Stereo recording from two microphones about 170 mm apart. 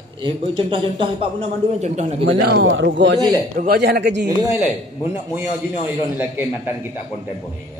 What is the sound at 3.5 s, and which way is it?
Speech, 65° right (ahead or behind).